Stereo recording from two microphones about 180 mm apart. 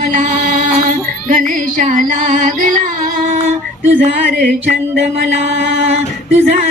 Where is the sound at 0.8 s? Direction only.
45° right (ahead or behind).